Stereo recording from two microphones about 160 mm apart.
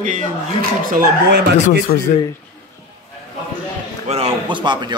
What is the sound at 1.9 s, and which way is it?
Speech, 50° left (ahead or behind).